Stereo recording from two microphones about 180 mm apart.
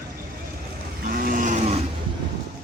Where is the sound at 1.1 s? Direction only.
50° right (ahead or behind).